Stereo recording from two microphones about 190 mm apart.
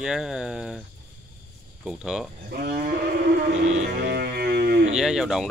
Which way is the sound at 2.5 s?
55° right (ahead or behind).